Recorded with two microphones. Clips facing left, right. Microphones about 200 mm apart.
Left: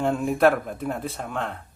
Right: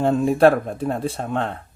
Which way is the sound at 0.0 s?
30° right (ahead or behind).